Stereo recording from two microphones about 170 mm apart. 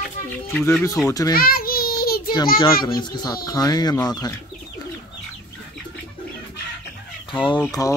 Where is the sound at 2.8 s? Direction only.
25° left (ahead or behind).